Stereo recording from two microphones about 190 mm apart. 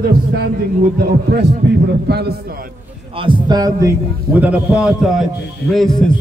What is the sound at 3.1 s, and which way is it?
A man's voice, 25° right (ahead or behind).